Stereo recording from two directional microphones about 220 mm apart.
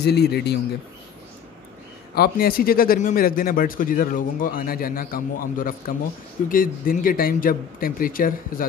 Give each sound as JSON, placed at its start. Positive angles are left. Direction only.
{"t": 0.0, "sound": "a man's voice", "side_deg": 45}
{"t": 2.1, "sound": "speech", "side_deg": 45}